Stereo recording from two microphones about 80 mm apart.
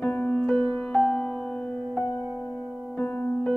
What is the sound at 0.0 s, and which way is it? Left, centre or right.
Music, left.